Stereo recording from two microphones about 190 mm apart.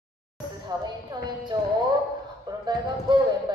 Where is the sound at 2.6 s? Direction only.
20° right (ahead or behind).